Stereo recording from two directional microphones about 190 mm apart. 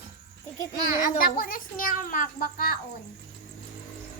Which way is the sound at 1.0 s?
50° left (ahead or behind).